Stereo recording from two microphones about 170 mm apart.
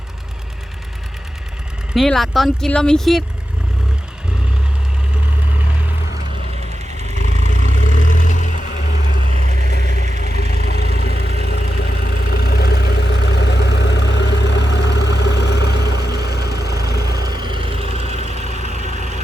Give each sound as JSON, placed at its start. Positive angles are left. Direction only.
{"t": 1.9, "sound": "speech", "side_deg": 0}
{"t": 7.3, "sound": "vehicle", "side_deg": 45}
{"t": 17.4, "sound": "vehicle", "side_deg": -30}
{"t": 18.2, "sound": "vehicle", "side_deg": 40}
{"t": 18.8, "sound": "vehicle", "side_deg": -45}